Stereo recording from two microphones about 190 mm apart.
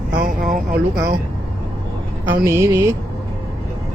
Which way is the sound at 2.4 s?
15° right (ahead or behind).